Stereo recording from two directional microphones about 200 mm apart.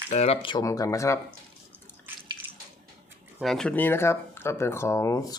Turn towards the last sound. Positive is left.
turn(degrees=15)  # may be behind; listen again after turning